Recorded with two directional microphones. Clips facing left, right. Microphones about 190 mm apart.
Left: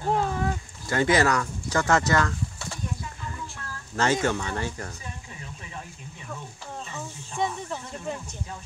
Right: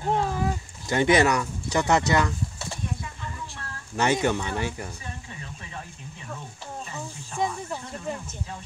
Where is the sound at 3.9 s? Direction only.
15° right (ahead or behind).